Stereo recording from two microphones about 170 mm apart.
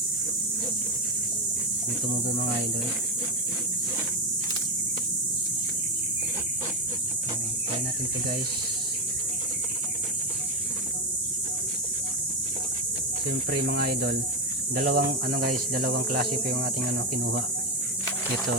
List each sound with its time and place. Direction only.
13.5 s speech: 65° right (ahead or behind)